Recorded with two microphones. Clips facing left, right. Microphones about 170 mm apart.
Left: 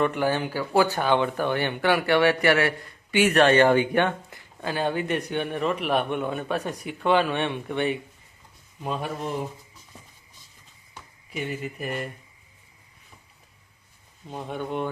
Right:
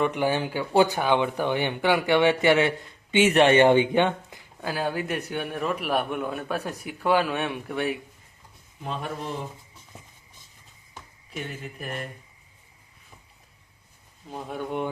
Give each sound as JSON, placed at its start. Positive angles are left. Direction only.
{"t": 0.0, "sound": "speech", "side_deg": -15}
{"t": 4.6, "sound": "a man's voice", "side_deg": -5}
{"t": 11.3, "sound": "a man's voice", "side_deg": 5}
{"t": 14.3, "sound": "a man's voice", "side_deg": 0}